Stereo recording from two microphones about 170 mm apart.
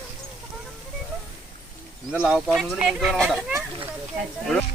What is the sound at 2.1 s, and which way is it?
Speech, 5° right (ahead or behind).